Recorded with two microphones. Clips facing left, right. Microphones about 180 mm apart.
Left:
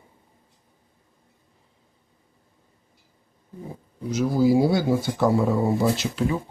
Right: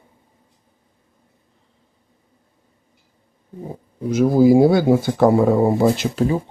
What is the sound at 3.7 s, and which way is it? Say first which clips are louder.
Speech: right 6 dB; 55° right (ahead or behind).